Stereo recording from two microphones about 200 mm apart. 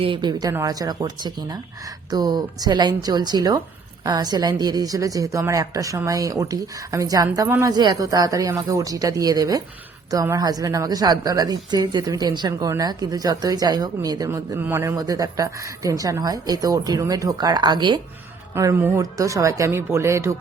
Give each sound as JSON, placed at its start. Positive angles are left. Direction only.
{"t": 0.0, "sound": "a woman's voice", "side_deg": -25}